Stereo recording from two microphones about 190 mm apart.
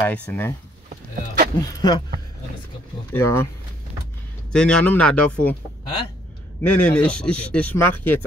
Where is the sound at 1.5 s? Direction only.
20° left (ahead or behind).